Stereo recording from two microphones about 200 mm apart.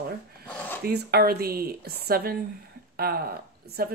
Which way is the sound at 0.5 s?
5° left (ahead or behind).